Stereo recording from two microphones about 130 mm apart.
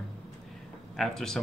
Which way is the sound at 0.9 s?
5° left (ahead or behind).